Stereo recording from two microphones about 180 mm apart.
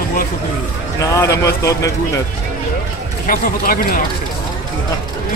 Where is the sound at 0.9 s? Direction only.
15° left (ahead or behind).